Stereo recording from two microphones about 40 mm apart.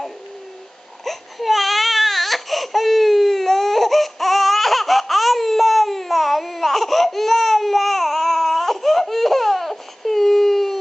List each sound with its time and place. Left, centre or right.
1.0 s baby cry: centre